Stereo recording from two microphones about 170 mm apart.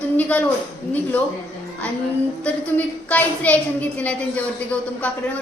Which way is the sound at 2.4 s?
10° left (ahead or behind).